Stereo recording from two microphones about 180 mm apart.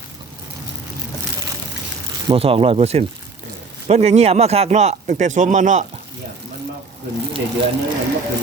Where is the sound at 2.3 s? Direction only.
30° right (ahead or behind).